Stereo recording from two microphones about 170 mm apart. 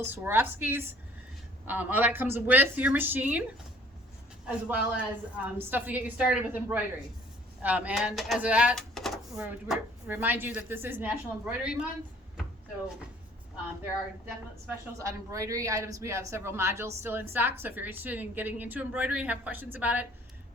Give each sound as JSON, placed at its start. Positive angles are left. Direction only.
{"t": 0.1, "sound": "speech", "side_deg": -10}
{"t": 4.4, "sound": "speech", "side_deg": -10}
{"t": 14.7, "sound": "speech", "side_deg": -20}